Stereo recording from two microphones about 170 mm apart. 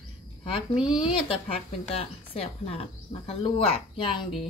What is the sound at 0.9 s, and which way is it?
Speech, 30° left (ahead or behind).